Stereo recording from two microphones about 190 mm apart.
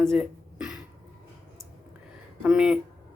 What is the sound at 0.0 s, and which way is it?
Throat clearing, centre (ahead or behind).